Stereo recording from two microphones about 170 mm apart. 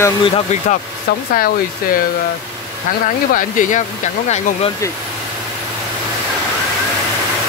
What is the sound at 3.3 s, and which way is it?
Speech, 50° left (ahead or behind).